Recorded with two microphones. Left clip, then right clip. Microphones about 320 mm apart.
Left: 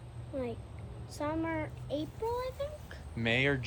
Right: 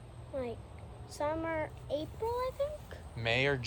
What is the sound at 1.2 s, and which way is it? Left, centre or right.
A child's voice, right.